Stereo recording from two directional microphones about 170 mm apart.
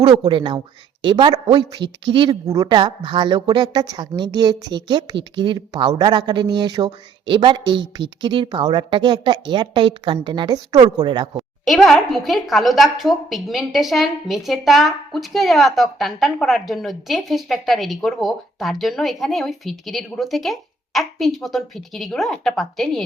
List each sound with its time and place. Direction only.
0.3 s speech: 30° right (ahead or behind)
11.6 s a woman's voice: centre (ahead or behind)